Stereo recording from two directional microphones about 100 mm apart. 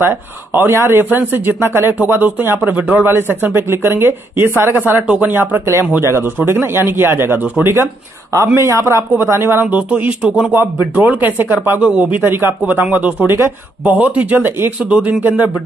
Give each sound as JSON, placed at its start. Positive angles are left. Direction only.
{"t": 0.0, "sound": "speech", "side_deg": -20}